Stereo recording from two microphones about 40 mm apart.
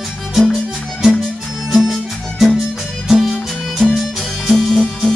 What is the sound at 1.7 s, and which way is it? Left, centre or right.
Music, centre.